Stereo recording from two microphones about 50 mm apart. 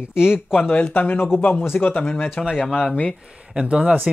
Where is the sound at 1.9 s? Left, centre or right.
Left.